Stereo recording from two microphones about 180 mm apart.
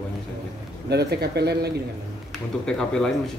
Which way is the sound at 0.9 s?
65° right (ahead or behind).